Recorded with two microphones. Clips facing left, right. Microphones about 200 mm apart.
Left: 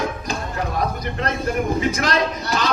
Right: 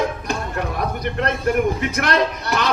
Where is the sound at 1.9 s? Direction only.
60° right (ahead or behind).